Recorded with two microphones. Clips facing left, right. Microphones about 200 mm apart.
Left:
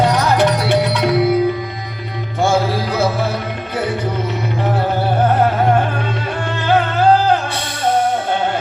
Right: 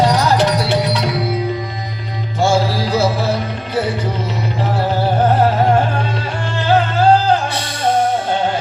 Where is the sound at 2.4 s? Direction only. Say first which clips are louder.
Even; 55° left (ahead or behind).